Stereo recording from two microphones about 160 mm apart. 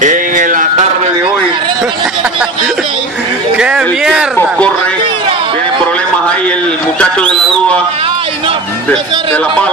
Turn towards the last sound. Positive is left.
turn(degrees=5)  # may be behind; listen again after turning